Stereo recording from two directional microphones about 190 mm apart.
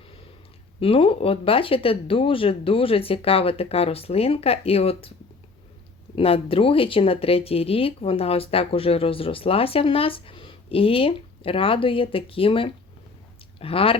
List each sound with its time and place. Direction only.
0.8 s speech: 30° left (ahead or behind)
6.1 s speech: 30° left (ahead or behind)